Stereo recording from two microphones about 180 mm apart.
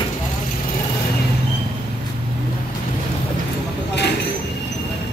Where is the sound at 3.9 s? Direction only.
70° left (ahead or behind).